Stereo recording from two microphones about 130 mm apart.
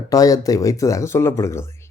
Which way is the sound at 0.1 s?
25° left (ahead or behind).